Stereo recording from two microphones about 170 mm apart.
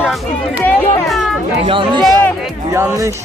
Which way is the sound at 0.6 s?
5° left (ahead or behind).